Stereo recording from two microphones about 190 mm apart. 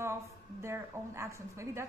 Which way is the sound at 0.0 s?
15° right (ahead or behind).